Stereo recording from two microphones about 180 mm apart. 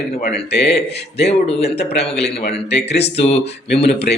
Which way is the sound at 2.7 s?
70° left (ahead or behind).